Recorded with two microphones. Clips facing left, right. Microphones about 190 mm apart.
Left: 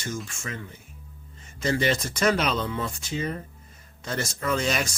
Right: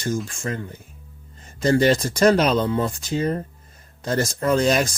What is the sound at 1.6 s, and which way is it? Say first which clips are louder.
Speech: right 7 dB; 40° right (ahead or behind).